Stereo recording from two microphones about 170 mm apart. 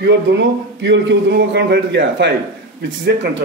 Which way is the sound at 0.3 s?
90° right.